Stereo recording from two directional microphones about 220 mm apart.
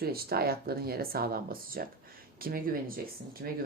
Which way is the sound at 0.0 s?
45° right (ahead or behind).